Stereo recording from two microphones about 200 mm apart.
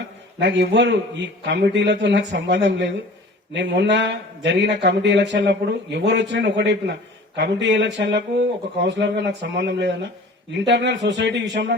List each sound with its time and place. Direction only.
0.3 s speech: 60° right (ahead or behind)